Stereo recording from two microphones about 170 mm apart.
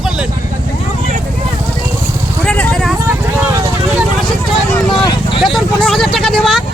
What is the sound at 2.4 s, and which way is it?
Vehicle, 5° left (ahead or behind).